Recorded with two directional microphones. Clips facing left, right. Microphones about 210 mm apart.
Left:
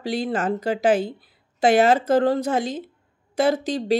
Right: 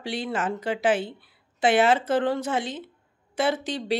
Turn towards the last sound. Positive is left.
turn(degrees=40)  # may be behind; listen again after turning